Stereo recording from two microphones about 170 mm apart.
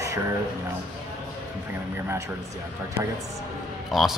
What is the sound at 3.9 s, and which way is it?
Speech, centre (ahead or behind).